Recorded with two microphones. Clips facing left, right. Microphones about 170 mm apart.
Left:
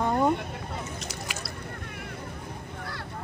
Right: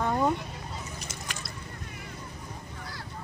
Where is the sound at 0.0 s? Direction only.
15° left (ahead or behind).